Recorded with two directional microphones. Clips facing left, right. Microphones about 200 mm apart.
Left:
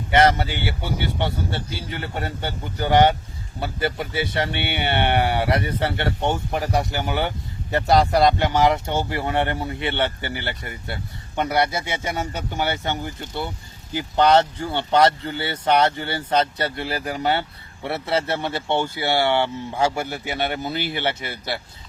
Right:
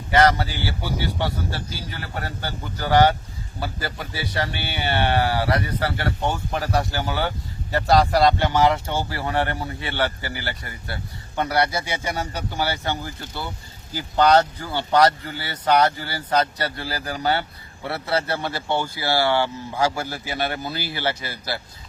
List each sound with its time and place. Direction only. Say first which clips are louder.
0.1 s speech: even; 25° left (ahead or behind)